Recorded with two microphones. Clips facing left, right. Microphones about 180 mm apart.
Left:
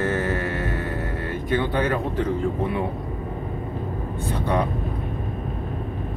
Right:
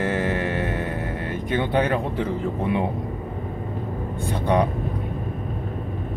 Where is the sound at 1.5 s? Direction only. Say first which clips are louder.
Right 1 dB; 15° right (ahead or behind).